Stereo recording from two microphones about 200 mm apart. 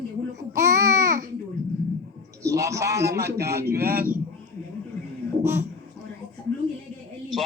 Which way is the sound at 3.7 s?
50° right (ahead or behind).